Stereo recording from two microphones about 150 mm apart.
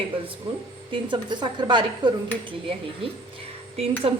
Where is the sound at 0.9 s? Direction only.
35° right (ahead or behind).